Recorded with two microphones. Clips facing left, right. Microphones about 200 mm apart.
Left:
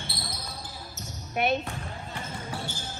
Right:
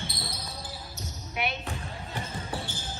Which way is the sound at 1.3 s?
50° left (ahead or behind).